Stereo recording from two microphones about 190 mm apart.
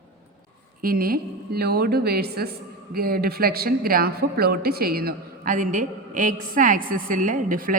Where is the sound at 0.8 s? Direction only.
50° right (ahead or behind).